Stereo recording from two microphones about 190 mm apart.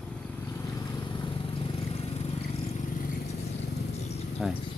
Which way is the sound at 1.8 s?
30° left (ahead or behind).